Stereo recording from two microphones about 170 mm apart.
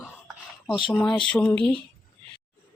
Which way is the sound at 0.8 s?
30° left (ahead or behind).